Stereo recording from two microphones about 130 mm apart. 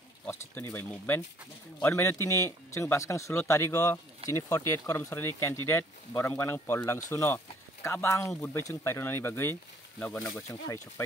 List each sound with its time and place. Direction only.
0.3 s speech: 20° left (ahead or behind)